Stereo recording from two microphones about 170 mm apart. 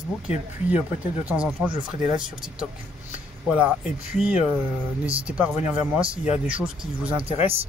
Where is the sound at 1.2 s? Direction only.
5° right (ahead or behind).